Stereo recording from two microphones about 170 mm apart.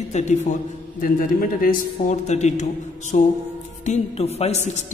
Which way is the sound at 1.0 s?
55° left (ahead or behind).